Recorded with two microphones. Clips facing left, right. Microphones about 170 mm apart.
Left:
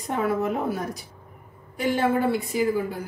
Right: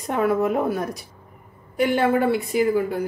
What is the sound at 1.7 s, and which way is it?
Cutlery, 65° right (ahead or behind).